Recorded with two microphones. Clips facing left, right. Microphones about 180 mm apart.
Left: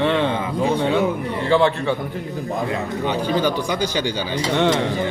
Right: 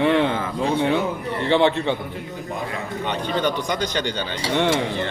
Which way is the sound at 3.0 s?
10° left (ahead or behind).